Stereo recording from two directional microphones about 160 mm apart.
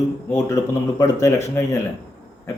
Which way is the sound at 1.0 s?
20° left (ahead or behind).